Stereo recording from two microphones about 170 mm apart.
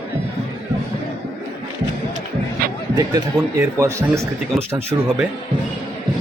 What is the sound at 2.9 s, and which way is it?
Speech, 20° right (ahead or behind).